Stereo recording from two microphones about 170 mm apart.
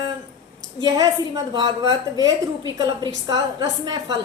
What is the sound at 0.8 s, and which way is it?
A woman's voice, 20° right (ahead or behind).